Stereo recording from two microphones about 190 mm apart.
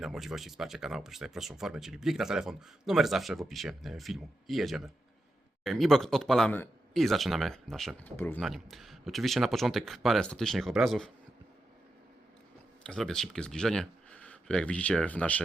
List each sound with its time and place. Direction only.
0.0 s speech: centre (ahead or behind)
8.4 s speech: centre (ahead or behind)
12.8 s speech: 5° left (ahead or behind)